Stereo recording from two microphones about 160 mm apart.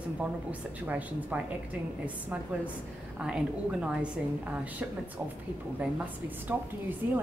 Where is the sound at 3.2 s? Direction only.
5° right (ahead or behind).